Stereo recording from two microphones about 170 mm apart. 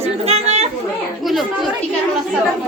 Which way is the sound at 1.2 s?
Centre (ahead or behind).